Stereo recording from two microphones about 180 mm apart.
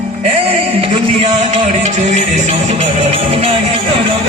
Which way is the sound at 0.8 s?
40° right (ahead or behind).